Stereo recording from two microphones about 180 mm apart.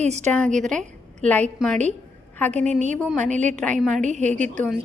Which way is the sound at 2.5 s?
40° right (ahead or behind).